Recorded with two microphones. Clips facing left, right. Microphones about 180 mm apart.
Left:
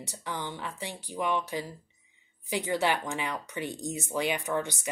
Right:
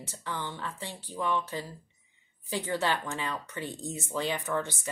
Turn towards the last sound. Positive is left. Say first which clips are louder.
# left 1 dB
turn(degrees=15)  # may be behind; listen again after turning